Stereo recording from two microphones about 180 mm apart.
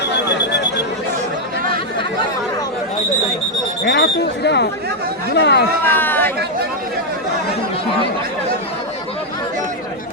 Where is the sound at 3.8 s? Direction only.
65° left (ahead or behind).